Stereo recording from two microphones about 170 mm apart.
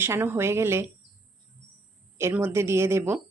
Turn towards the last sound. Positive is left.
turn(degrees=-15)  # may be behind; listen again after turning